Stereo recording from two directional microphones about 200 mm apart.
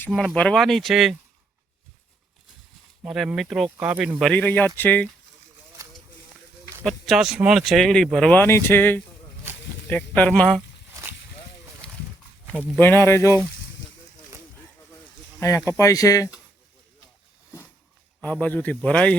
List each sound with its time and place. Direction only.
0.0 s speech: 5° left (ahead or behind)
3.0 s a man's voice: 5° right (ahead or behind)
5.8 s a sound: 15° right (ahead or behind)
6.8 s speech: centre (ahead or behind)
12.8 s a man's voice: 10° left (ahead or behind)
15.4 s a man's voice: 15° left (ahead or behind)
18.2 s a man's voice: 5° left (ahead or behind)